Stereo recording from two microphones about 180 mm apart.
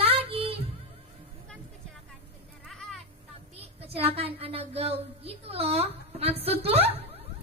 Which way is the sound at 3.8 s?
35° right (ahead or behind).